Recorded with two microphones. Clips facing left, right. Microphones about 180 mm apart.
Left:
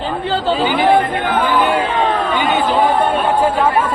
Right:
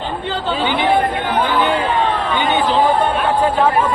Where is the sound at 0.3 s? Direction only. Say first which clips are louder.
Left 3 dB; 35° left (ahead or behind).